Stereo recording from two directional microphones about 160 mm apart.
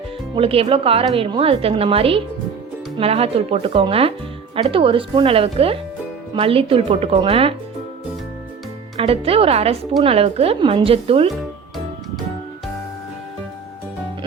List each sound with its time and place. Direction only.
0.3 s speech: 35° right (ahead or behind)
9.0 s speech: 35° right (ahead or behind)